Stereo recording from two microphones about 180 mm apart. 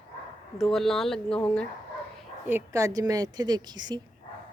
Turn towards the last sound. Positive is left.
turn(degrees=-25)  # may be behind; listen again after turning